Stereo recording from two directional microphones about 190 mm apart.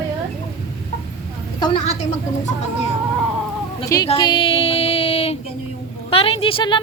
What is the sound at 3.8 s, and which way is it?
Speech, 20° left (ahead or behind).